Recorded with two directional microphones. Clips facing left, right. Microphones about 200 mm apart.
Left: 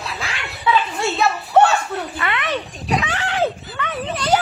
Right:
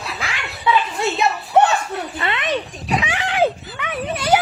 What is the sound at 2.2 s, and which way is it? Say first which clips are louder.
Speech: right 3 dB; 25° right (ahead or behind).